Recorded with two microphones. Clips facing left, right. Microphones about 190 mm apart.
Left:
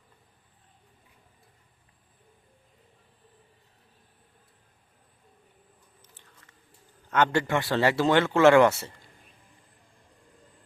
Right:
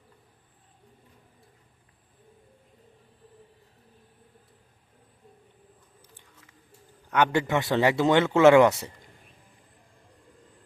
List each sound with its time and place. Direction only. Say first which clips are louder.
7.1 s speech: right 1 dB; 15° right (ahead or behind)